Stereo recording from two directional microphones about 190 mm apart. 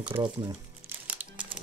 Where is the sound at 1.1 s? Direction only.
5° right (ahead or behind).